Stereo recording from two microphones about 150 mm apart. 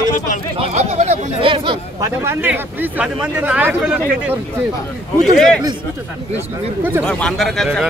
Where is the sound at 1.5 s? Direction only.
35° right (ahead or behind).